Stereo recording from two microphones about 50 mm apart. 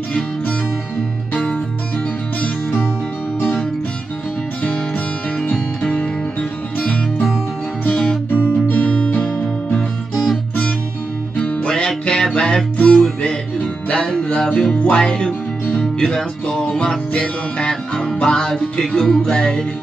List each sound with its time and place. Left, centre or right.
1.3 s music: left
5.5 s music: centre
7.8 s music: centre